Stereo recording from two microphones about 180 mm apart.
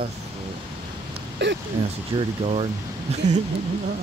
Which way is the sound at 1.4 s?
85° right.